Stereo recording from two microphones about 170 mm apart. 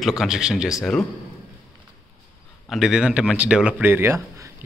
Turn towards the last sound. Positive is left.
turn(degrees=-15)  # may be behind; listen again after turning